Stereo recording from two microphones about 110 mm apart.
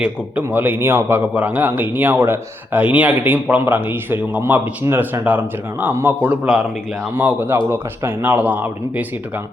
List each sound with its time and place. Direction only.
0.4 s a man's voice: 15° right (ahead or behind)